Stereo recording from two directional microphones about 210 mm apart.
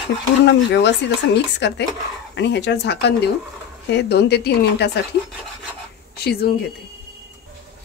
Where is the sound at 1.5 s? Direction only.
55° left (ahead or behind).